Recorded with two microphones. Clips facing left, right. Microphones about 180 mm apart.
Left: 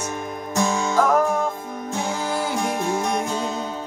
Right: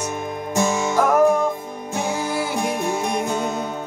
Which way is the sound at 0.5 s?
15° right (ahead or behind).